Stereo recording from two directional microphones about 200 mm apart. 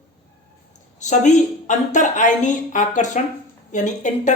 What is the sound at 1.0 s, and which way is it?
A woman's voice, 35° left (ahead or behind).